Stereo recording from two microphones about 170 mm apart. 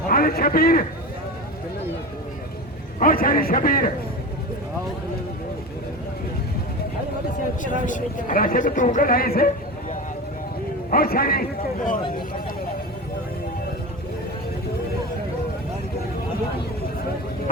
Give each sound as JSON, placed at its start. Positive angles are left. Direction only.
{"t": 0.1, "sound": "a man's voice", "side_deg": 60}
{"t": 3.0, "sound": "a man's voice", "side_deg": 55}
{"t": 7.6, "sound": "speech", "side_deg": 50}
{"t": 10.9, "sound": "a man's voice", "side_deg": 60}